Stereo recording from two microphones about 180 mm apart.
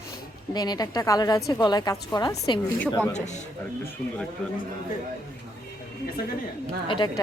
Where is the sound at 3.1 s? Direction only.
40° left (ahead or behind).